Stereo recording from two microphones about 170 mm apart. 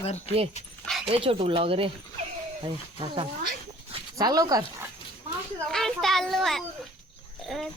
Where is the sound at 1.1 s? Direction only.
30° right (ahead or behind).